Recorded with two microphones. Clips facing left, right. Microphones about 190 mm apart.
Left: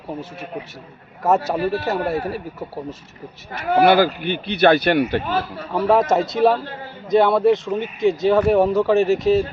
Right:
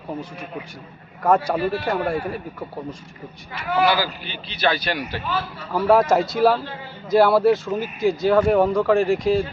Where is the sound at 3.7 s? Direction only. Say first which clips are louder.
Left 6 dB; 55° left (ahead or behind).